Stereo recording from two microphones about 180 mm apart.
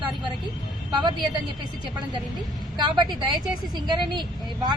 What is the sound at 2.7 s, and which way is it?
A woman's voice, 25° right (ahead or behind).